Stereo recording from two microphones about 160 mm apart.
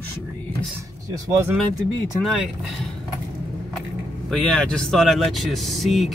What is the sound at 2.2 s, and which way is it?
Speech, 5° right (ahead or behind).